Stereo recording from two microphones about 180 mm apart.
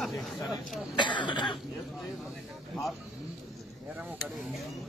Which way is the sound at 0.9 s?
25° left (ahead or behind).